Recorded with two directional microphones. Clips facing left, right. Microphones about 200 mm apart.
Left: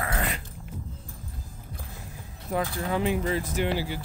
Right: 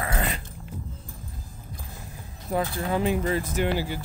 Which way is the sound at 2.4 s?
35° right (ahead or behind).